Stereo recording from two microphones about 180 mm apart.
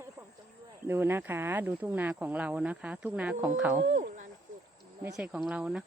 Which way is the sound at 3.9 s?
45° right (ahead or behind).